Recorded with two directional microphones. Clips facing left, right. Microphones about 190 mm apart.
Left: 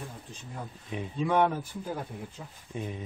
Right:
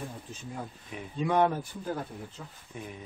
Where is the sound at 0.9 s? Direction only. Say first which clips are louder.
Left 6 dB; 25° left (ahead or behind).